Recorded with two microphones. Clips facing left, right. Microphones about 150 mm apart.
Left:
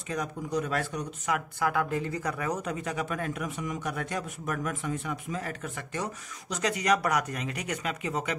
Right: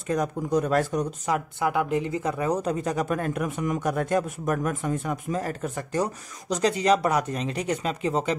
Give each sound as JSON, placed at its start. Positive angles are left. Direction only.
{"t": 0.1, "sound": "speech", "side_deg": -45}
{"t": 1.6, "sound": "speech", "side_deg": -20}